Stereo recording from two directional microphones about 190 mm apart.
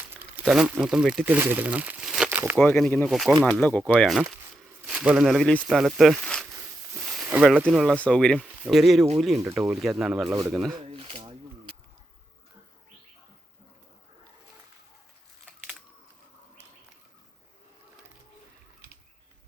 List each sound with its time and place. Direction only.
0.1 s speech: 10° right (ahead or behind)
2.6 s speech: 10° left (ahead or behind)
3.1 s speech: centre (ahead or behind)
3.9 s speech: 5° right (ahead or behind)
7.0 s a sound: centre (ahead or behind)
7.4 s speech: 5° right (ahead or behind)
10.8 s a sound: 30° right (ahead or behind)